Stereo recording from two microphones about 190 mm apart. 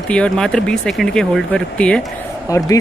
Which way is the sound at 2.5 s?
15° left (ahead or behind).